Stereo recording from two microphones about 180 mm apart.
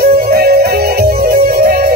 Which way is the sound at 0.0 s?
55° right (ahead or behind).